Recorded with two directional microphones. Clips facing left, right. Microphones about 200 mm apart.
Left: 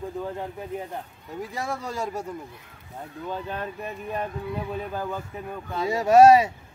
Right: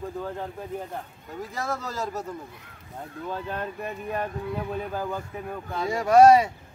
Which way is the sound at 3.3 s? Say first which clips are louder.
Even; 5° left (ahead or behind).